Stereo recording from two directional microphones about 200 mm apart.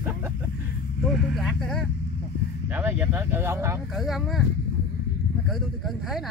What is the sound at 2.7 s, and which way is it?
Speech, 10° right (ahead or behind).